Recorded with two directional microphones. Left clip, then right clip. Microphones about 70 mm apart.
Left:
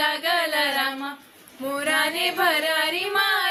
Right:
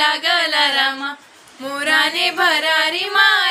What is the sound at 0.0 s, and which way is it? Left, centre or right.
Music, left.